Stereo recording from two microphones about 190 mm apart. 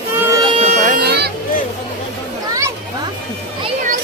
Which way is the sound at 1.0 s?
60° right (ahead or behind).